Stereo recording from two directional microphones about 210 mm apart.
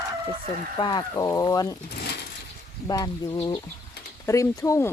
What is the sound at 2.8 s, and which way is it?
Speech, 15° left (ahead or behind).